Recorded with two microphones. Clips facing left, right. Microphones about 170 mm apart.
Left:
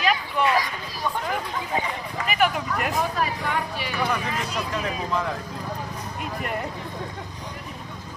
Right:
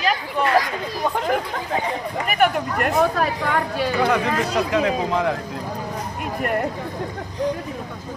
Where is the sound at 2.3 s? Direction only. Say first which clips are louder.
Right 3 dB; 50° right (ahead or behind); by 3.6 s 70° right (ahead or behind).